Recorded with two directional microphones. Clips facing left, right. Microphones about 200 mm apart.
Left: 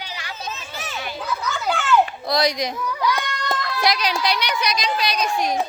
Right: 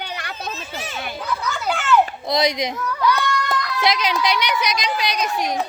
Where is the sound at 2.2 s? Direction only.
20° right (ahead or behind).